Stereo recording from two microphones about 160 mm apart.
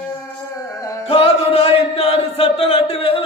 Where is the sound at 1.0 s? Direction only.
40° left (ahead or behind).